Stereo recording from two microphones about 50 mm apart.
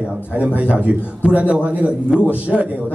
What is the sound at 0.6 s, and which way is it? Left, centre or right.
A man's voice, right.